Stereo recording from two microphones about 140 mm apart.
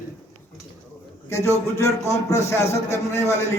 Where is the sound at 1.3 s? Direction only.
20° left (ahead or behind).